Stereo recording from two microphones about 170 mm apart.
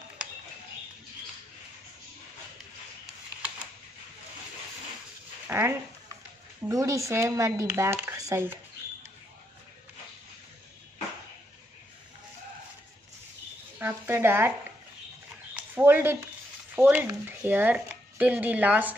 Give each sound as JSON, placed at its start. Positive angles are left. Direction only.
{"t": 5.5, "sound": "speech", "side_deg": -15}
{"t": 13.7, "sound": "speech", "side_deg": -10}
{"t": 15.7, "sound": "speech", "side_deg": -15}